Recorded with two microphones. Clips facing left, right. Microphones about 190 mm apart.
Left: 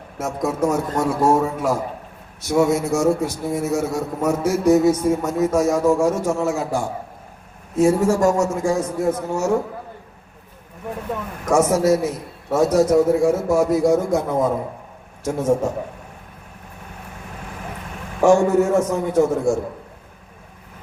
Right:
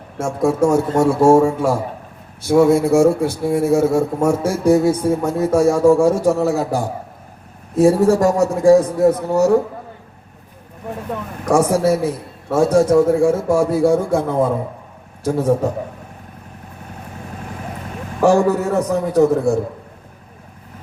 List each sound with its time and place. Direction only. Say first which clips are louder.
0.2 s a man's voice: right 5 dB; 30° right (ahead or behind)
11.4 s a man's voice: right 1 dB; 35° right (ahead or behind)
18.3 s a man's voice: even; 35° right (ahead or behind)